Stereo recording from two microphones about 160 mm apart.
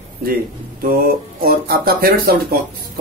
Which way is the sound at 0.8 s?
65° right (ahead or behind).